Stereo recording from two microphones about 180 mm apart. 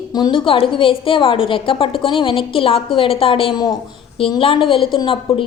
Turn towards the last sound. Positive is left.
turn(degrees=30)  # may be behind; listen again after turning